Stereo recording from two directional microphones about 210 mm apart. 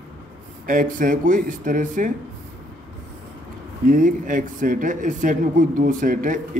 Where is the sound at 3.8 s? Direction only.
40° right (ahead or behind).